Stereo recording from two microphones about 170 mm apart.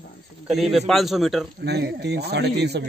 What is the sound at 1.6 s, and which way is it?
A man's voice, 75° right (ahead or behind).